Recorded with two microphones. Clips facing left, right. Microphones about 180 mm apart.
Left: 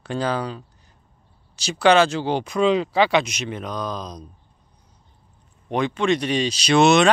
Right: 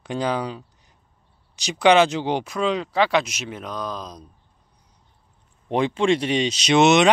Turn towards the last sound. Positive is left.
turn(degrees=-20)  # may be behind; listen again after turning